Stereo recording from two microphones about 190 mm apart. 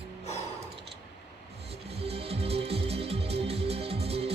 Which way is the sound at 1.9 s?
30° right (ahead or behind).